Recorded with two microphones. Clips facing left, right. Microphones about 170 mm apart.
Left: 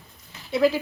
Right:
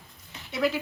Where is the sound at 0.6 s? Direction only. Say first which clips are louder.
Left 6 dB; 35° left (ahead or behind).